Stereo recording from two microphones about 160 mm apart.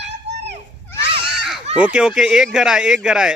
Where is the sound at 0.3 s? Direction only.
45° right (ahead or behind).